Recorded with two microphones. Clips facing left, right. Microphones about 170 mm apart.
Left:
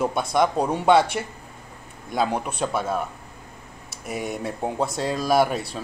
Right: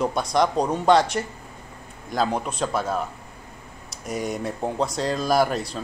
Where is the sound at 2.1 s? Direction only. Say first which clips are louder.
Even; 5° left (ahead or behind).